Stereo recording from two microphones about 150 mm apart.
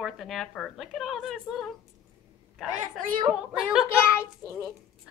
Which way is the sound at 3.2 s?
5° right (ahead or behind).